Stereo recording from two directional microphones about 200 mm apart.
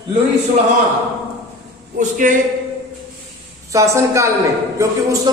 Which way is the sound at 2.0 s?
40° right (ahead or behind).